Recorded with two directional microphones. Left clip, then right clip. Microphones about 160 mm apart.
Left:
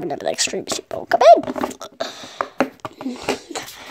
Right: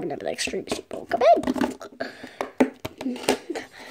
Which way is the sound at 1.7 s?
5° left (ahead or behind).